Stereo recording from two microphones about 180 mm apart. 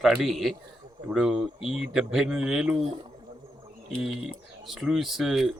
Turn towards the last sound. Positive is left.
turn(degrees=0)  # may be behind; listen again after turning